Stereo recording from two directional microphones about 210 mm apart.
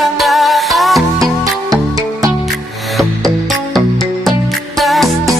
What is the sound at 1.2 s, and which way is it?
Music, 15° right (ahead or behind).